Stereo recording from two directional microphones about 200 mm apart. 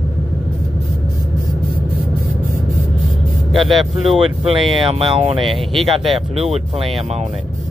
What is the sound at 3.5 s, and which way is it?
Speech, centre (ahead or behind).